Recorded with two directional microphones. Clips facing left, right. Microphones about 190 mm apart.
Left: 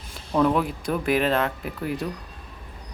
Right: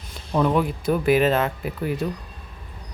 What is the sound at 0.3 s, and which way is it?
Speech, centre (ahead or behind).